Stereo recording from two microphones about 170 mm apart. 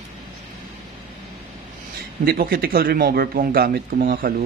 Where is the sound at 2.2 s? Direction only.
60° right (ahead or behind).